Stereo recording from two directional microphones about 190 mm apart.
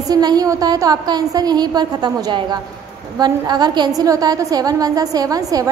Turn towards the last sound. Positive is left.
turn(degrees=-20)  # may be behind; listen again after turning